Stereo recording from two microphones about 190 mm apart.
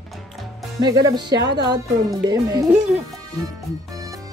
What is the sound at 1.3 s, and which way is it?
Speech, 65° right (ahead or behind).